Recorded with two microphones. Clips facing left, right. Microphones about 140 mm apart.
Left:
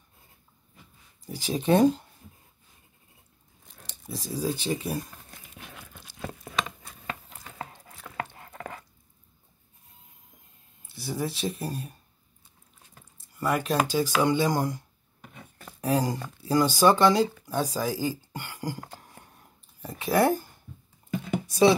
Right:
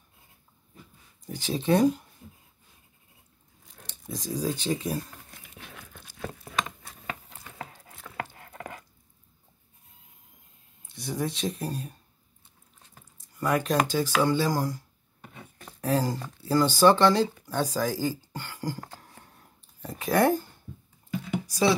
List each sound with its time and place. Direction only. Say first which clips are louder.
1.2 s speech: left 1 dB; 10° left (ahead or behind)
1.7 s speech: left 2 dB; 30° left (ahead or behind)
3.8 s speech: right 1 dB; 5° left (ahead or behind)
10.9 s speech: even; 5° left (ahead or behind)
13.4 s speech: right 1 dB; 5° left (ahead or behind); by 14.8 s 20° left (ahead or behind)
15.8 s speech: left 1 dB; 15° left (ahead or behind)
21.5 s speech: left 4 dB; 25° left (ahead or behind)